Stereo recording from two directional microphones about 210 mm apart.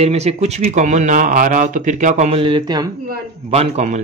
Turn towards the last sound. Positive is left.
turn(degrees=-30)  # may be behind; listen again after turning